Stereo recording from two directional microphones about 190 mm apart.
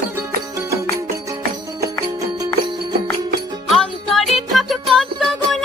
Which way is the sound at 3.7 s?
Centre (ahead or behind).